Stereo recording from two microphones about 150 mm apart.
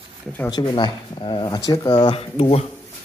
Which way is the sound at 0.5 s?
30° left (ahead or behind).